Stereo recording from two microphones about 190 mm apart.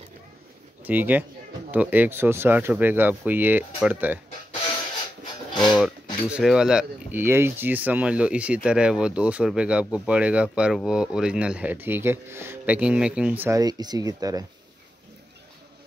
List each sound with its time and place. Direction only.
0.8 s speech: 10° right (ahead or behind)
5.5 s speech: 25° left (ahead or behind)
6.3 s speech: 5° right (ahead or behind); by 14.4 s 20° right (ahead or behind)